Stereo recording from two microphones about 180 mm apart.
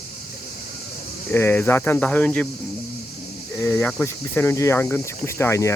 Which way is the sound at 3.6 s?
15° left (ahead or behind).